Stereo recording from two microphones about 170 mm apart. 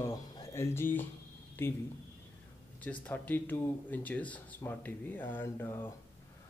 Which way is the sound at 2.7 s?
10° left (ahead or behind).